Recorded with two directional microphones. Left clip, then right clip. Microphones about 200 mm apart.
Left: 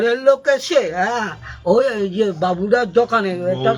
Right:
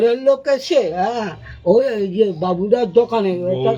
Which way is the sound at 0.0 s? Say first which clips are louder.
Even; 25° right (ahead or behind).